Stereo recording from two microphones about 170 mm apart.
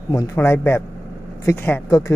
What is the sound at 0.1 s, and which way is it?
A man's voice, 15° left (ahead or behind).